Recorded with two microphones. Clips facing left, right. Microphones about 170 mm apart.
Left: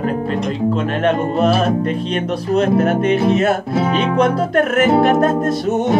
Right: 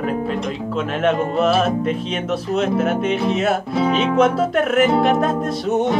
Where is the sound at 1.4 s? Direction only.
Centre (ahead or behind).